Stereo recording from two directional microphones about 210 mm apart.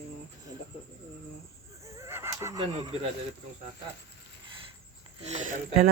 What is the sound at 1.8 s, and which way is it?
Neigh, 15° right (ahead or behind).